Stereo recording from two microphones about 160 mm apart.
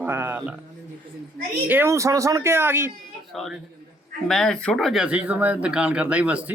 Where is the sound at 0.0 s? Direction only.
15° right (ahead or behind).